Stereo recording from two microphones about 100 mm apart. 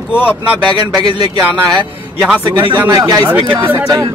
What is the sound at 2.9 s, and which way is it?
Speech, 40° right (ahead or behind).